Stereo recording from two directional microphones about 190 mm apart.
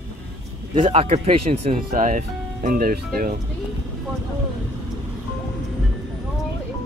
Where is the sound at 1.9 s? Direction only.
45° right (ahead or behind).